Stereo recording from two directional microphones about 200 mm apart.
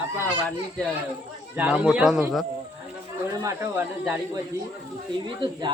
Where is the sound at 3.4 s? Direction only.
15° right (ahead or behind).